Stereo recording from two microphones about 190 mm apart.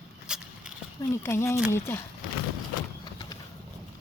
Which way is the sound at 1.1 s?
15° left (ahead or behind).